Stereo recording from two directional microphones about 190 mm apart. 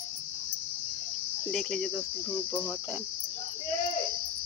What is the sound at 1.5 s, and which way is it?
Cricket, 5° left (ahead or behind).